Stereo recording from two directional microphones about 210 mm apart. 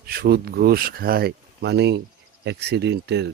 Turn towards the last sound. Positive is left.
turn(degrees=-55)  # may be behind; listen again after turning